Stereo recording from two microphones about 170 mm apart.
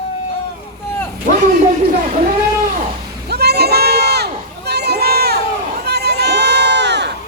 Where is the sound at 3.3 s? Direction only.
70° right (ahead or behind).